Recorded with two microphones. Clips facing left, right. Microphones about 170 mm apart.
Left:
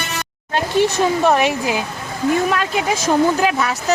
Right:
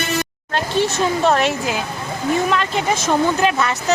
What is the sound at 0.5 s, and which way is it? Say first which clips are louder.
Speech: left 3 dB; 15° left (ahead or behind).